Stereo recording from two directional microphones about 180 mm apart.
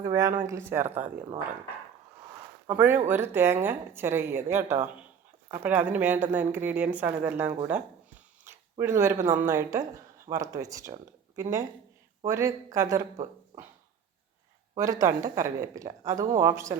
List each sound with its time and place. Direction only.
0.0 s a woman's voice: 15° right (ahead or behind)
2.6 s a woman's voice: 10° right (ahead or behind)
8.8 s a woman's voice: 15° right (ahead or behind)
12.2 s a woman's voice: 15° right (ahead or behind)
14.8 s a woman's voice: 20° right (ahead or behind)